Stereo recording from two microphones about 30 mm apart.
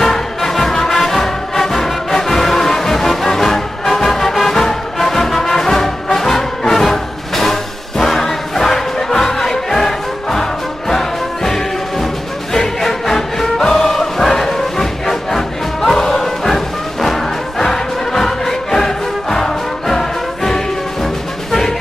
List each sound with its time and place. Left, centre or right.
0.0 s music: centre